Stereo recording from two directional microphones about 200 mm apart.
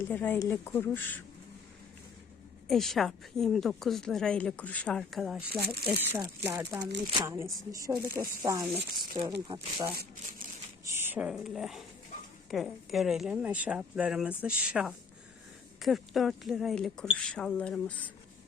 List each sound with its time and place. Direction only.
0.0 s speech: 10° left (ahead or behind)
2.6 s speech: centre (ahead or behind)
5.5 s speech: 50° right (ahead or behind)
6.1 s speech: 15° right (ahead or behind)
9.9 s speech: 50° right (ahead or behind)
10.8 s speech: 10° right (ahead or behind); by 17.9 s 5° left (ahead or behind)